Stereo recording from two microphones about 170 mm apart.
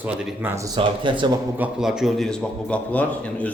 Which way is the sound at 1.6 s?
5° right (ahead or behind).